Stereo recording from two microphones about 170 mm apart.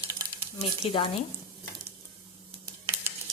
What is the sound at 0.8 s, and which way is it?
Speech, 30° left (ahead or behind).